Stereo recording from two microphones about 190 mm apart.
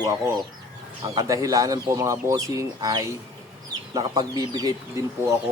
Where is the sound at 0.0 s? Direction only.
15° right (ahead or behind).